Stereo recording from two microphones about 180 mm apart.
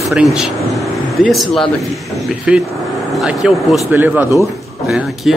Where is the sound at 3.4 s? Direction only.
5° right (ahead or behind).